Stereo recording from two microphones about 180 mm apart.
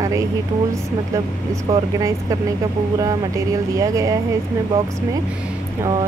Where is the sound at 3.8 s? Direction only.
20° right (ahead or behind).